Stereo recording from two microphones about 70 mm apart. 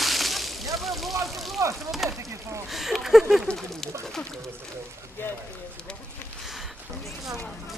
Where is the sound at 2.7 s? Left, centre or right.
Centre.